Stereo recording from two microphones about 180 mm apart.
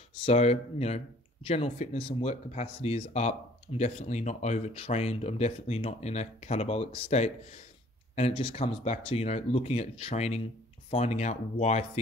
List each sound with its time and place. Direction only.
0.2 s speech: 35° left (ahead or behind)